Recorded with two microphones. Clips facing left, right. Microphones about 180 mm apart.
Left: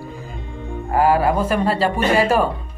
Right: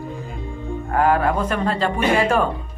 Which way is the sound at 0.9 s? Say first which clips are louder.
Left 2 dB; 5° left (ahead or behind).